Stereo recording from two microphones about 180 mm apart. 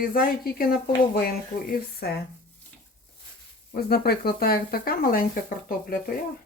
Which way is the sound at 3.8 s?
60° left (ahead or behind).